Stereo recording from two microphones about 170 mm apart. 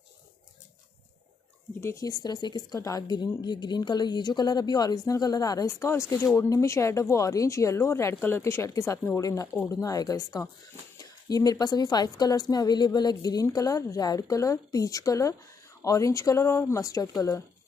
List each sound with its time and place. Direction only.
1.8 s speech: 20° left (ahead or behind)